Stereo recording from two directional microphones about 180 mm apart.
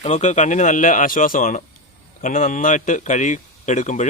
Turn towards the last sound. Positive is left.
turn(degrees=40)  # may be behind; listen again after turning